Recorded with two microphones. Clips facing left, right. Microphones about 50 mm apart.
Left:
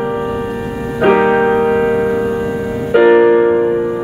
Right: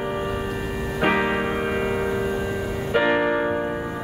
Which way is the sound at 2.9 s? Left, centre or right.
Centre.